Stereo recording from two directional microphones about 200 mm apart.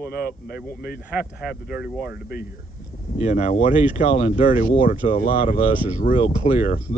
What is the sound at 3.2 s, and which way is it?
Speech, 35° left (ahead or behind).